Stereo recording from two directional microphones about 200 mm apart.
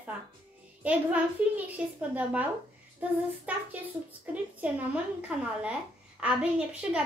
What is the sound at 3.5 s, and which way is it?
A woman's voice, 5° right (ahead or behind).